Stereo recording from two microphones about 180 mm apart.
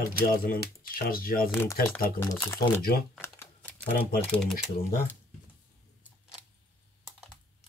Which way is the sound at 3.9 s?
55° left (ahead or behind).